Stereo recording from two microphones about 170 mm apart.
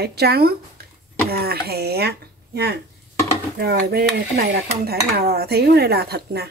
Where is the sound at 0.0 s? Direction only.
70° right (ahead or behind).